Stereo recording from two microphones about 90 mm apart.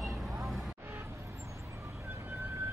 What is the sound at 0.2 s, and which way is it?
Vehicle, centre (ahead or behind).